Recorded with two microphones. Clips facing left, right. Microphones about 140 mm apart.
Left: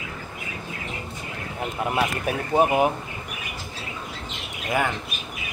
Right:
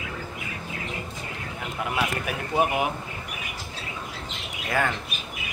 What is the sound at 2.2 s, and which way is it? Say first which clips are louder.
Speech: left 6 dB; 35° left (ahead or behind).